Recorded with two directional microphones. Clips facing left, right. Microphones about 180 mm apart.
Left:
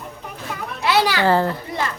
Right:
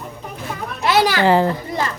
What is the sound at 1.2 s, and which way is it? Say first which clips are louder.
Speech: right 3 dB; 15° right (ahead or behind).